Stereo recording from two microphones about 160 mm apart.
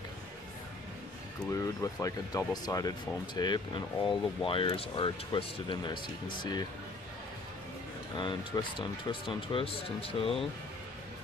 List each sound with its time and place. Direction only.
1.5 s speech: 20° left (ahead or behind)
8.2 s speech: 30° left (ahead or behind)